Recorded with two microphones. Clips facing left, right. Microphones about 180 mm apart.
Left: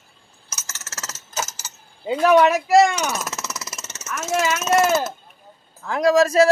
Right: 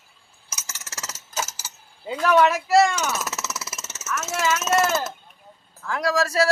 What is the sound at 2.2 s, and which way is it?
Speech, 15° left (ahead or behind).